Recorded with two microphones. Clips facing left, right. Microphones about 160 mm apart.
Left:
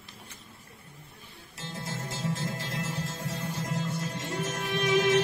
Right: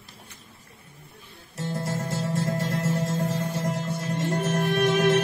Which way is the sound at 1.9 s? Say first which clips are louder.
Right 2 dB; 60° right (ahead or behind).